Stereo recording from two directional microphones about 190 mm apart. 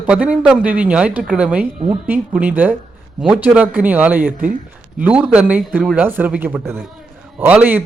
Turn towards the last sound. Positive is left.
turn(degrees=-10)  # may be behind; listen again after turning